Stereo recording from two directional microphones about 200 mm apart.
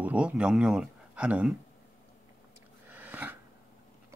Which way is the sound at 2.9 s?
10° right (ahead or behind).